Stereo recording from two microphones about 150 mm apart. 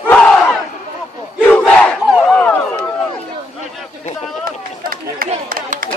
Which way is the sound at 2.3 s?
10° left (ahead or behind).